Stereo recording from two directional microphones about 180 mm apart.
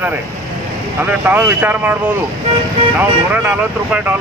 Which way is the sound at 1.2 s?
10° right (ahead or behind).